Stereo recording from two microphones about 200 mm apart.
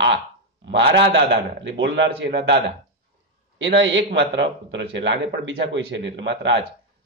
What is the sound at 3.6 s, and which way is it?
A man's voice, 65° right (ahead or behind).